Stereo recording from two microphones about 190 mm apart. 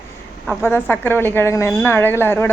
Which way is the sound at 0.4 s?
10° left (ahead or behind).